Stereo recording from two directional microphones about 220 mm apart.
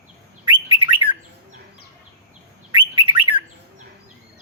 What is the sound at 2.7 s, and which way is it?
Bird, 20° right (ahead or behind).